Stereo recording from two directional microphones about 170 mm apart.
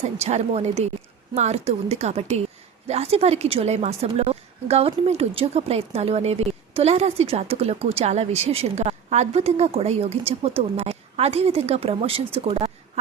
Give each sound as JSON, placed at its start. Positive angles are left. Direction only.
{"t": 0.0, "sound": "a woman's voice", "side_deg": -40}